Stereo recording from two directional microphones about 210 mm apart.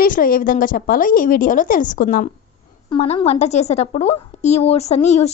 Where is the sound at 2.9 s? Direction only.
25° left (ahead or behind).